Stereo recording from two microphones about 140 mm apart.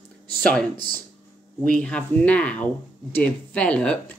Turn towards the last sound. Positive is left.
turn(degrees=10)  # may be behind; listen again after turning